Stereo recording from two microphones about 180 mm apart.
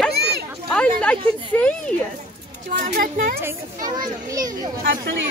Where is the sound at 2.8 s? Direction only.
50° right (ahead or behind).